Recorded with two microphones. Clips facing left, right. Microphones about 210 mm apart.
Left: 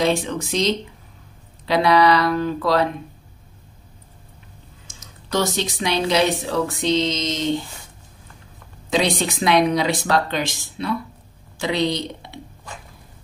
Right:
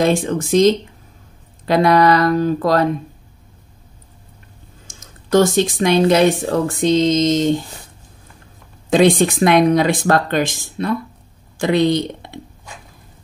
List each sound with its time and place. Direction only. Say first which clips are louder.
0.0 s speech: right 4 dB; 50° right (ahead or behind)
4.8 s speech: right 6 dB; 50° right (ahead or behind)
8.9 s speech: right 8 dB; 50° right (ahead or behind)